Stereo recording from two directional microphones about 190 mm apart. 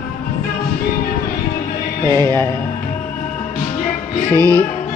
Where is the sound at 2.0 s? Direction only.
20° right (ahead or behind).